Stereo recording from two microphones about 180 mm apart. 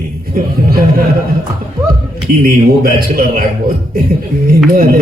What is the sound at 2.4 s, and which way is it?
A man's voice, 55° right (ahead or behind).